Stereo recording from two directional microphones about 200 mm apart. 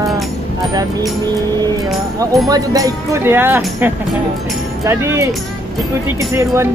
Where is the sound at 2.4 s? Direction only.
15° right (ahead or behind).